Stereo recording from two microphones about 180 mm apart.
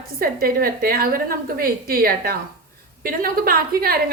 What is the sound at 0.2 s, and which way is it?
A woman's voice, 55° right (ahead or behind).